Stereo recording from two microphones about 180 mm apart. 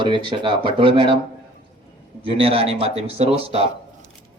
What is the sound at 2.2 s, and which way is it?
Speech, 30° right (ahead or behind).